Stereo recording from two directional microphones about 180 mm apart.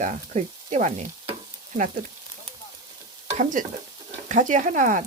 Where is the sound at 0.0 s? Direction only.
45° right (ahead or behind).